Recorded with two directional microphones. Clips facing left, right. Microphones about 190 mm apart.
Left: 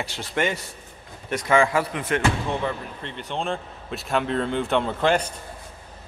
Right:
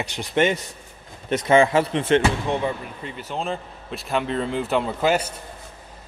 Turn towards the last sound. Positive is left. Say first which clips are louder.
# even
turn(degrees=-5)  # may be behind; listen again after turning